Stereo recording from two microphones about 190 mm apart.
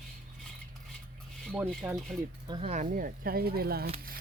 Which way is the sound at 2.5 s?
35° right (ahead or behind).